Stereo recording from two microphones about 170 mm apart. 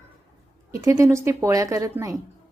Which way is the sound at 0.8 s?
15° right (ahead or behind).